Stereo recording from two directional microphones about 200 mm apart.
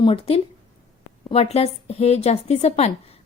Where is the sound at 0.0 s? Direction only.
30° left (ahead or behind).